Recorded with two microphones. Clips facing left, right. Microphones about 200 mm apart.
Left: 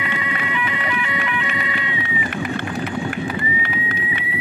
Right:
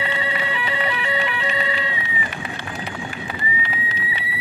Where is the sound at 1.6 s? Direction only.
30° right (ahead or behind).